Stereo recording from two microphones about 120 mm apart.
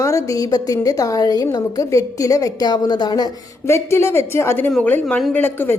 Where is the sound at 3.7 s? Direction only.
20° left (ahead or behind).